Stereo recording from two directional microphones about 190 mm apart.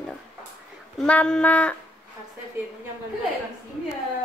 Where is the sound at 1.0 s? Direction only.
5° left (ahead or behind).